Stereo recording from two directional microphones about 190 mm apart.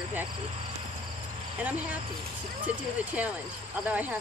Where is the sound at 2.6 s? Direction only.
10° right (ahead or behind).